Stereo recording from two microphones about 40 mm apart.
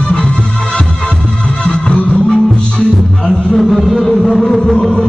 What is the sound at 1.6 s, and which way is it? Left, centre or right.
Music, left.